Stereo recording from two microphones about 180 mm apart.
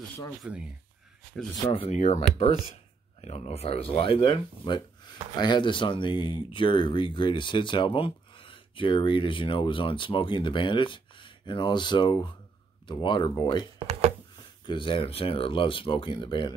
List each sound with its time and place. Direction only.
0.4 s speech: 5° right (ahead or behind)
1.7 s speech: 35° left (ahead or behind)
3.2 s speech: 35° left (ahead or behind)
14.7 s speech: 30° left (ahead or behind)